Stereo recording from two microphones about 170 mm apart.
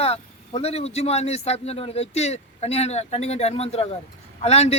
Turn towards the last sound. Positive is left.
turn(degrees=40)  # may be behind; listen again after turning